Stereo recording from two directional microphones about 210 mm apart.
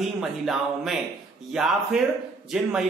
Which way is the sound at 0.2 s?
Centre (ahead or behind).